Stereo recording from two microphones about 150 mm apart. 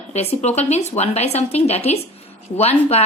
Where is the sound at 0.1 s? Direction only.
45° left (ahead or behind).